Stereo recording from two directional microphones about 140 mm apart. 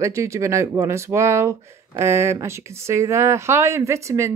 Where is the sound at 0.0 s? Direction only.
20° right (ahead or behind).